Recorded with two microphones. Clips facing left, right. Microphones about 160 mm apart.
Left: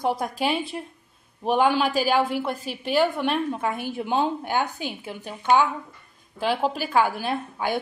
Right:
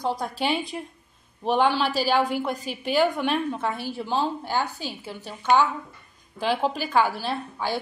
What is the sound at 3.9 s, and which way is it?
A woman's voice, 20° left (ahead or behind).